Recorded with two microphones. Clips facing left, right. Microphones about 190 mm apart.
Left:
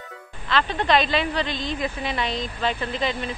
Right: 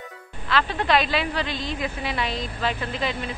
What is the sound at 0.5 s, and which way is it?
Speech, 5° right (ahead or behind).